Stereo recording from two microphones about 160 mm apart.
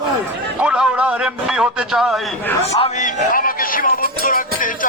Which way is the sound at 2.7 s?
45° left (ahead or behind).